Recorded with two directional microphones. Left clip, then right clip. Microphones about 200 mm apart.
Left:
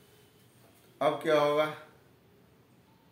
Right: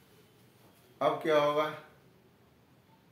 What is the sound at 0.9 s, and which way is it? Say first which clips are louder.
Speech: left 1 dB; 15° left (ahead or behind).